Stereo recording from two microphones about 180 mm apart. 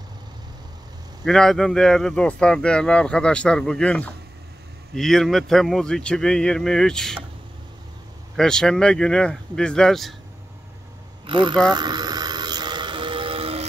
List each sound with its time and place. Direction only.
1.2 s speech: centre (ahead or behind)
8.4 s speech: 5° left (ahead or behind)
11.2 s speech: 25° right (ahead or behind)
11.7 s a sound: 25° right (ahead or behind)